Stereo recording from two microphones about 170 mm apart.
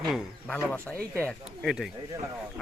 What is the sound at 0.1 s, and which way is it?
Speech, 5° left (ahead or behind).